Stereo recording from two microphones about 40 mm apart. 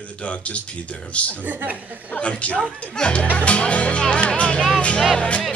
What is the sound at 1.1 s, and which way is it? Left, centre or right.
Speech, left.